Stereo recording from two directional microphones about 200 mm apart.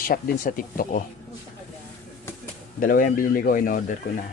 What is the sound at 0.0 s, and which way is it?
Speech, 45° left (ahead or behind).